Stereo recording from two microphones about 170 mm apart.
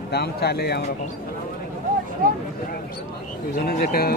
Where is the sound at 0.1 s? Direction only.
70° left (ahead or behind).